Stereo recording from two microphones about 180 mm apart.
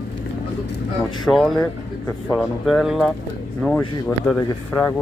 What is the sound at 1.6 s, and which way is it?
Speech, 15° left (ahead or behind).